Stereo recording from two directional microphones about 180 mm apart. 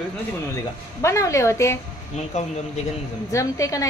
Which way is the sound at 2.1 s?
40° left (ahead or behind).